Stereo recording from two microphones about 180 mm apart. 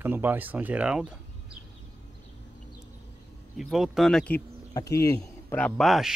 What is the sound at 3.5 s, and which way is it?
Speech, centre (ahead or behind).